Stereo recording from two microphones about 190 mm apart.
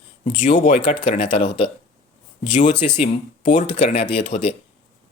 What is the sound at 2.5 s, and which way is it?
Speech, 40° left (ahead or behind).